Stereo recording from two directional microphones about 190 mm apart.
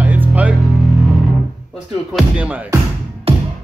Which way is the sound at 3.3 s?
30° right (ahead or behind).